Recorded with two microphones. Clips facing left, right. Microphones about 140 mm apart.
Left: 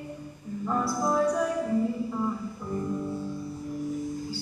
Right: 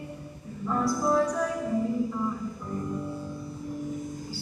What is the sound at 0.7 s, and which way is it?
Music, 10° left (ahead or behind).